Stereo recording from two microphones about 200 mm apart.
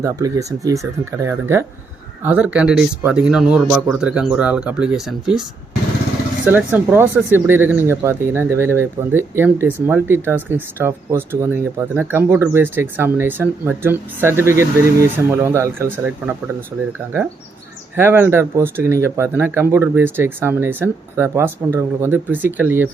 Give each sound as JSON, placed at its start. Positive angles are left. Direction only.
{"t": 0.0, "sound": "speech", "side_deg": -15}
{"t": 6.4, "sound": "speech", "side_deg": -5}
{"t": 17.9, "sound": "speech", "side_deg": -10}